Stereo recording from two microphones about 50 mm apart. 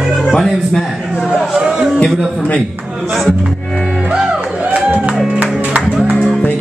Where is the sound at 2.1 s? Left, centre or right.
Centre.